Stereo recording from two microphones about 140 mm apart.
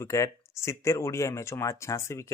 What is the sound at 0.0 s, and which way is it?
Speech, 20° left (ahead or behind).